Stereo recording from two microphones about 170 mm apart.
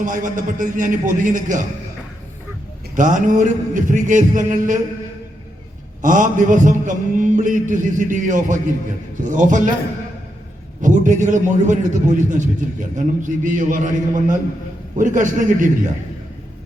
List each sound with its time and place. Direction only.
0.0 s a man's voice: 50° right (ahead or behind)
2.9 s a man's voice: 50° right (ahead or behind)
6.0 s a man's voice: 50° right (ahead or behind)
10.8 s a man's voice: 50° right (ahead or behind)